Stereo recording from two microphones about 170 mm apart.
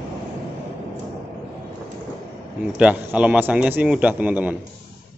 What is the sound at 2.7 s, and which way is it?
A man's voice, 10° right (ahead or behind).